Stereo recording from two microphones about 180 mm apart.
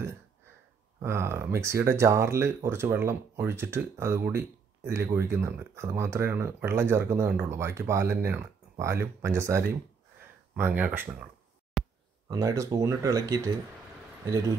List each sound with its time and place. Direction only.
1.0 s speech: 15° right (ahead or behind)
11.8 s a sound: centre (ahead or behind)
12.3 s speech: 20° right (ahead or behind)